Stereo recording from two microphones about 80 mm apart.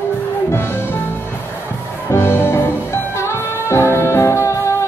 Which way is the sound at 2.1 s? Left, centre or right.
Left.